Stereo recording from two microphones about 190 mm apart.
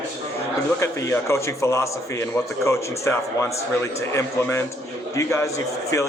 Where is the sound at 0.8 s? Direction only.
15° left (ahead or behind).